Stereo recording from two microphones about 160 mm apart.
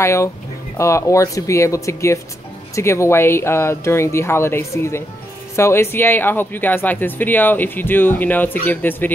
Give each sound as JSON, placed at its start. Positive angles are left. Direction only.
{"t": 0.0, "sound": "speech", "side_deg": 20}